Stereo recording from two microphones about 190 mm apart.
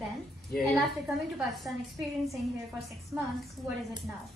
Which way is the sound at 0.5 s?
Centre (ahead or behind).